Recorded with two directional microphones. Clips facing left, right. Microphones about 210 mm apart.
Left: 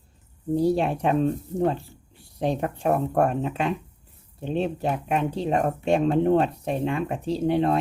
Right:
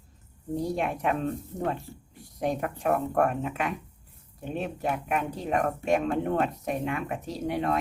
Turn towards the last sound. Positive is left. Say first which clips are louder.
# left 6 dB
turn(degrees=30)  # may be behind; listen again after turning